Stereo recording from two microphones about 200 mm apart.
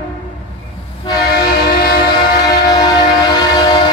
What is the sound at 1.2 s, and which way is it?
Train, 50° left (ahead or behind).